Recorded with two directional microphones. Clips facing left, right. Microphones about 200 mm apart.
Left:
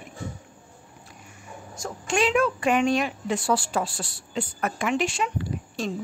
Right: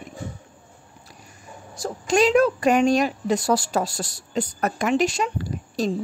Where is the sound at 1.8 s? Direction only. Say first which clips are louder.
Right 5 dB; 40° right (ahead or behind).